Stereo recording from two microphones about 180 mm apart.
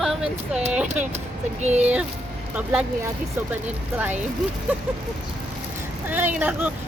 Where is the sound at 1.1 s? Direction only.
40° right (ahead or behind).